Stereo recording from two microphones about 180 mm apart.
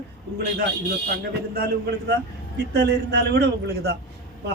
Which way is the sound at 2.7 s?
65° right (ahead or behind).